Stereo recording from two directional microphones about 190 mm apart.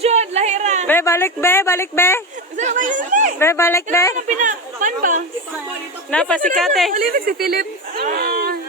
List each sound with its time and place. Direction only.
0.0 s a sound: 35° right (ahead or behind)
0.9 s speech: 15° left (ahead or behind)
2.6 s speech: 40° right (ahead or behind)
3.3 s speech: 15° left (ahead or behind)
4.3 s speech: 40° right (ahead or behind)
6.1 s speech: 5° left (ahead or behind)
6.9 s speech: 45° right (ahead or behind)